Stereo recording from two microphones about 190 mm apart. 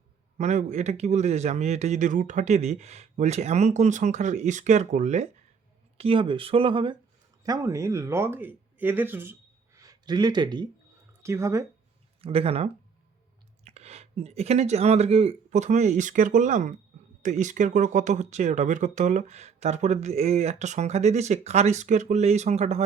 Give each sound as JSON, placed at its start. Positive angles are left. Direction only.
{"t": 0.3, "sound": "speech", "side_deg": -40}
{"t": 12.2, "sound": "speech", "side_deg": -30}